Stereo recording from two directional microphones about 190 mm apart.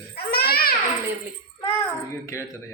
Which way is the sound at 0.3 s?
55° left (ahead or behind).